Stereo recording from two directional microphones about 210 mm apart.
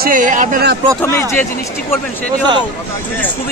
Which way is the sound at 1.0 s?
15° left (ahead or behind).